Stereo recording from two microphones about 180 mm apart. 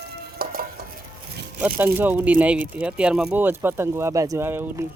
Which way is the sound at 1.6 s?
10° right (ahead or behind).